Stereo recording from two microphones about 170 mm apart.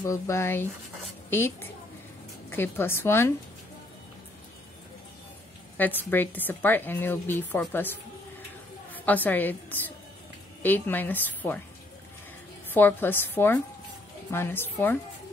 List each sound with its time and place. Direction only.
0.0 s a woman's voice: 15° left (ahead or behind)
5.8 s a woman's voice: 10° left (ahead or behind)
8.9 s a woman's voice: 10° left (ahead or behind)
12.7 s a woman's voice: 10° left (ahead or behind)